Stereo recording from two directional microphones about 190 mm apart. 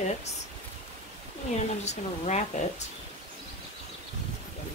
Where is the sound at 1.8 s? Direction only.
35° left (ahead or behind).